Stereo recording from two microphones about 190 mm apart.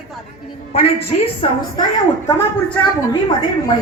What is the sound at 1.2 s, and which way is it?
Speech, 30° left (ahead or behind).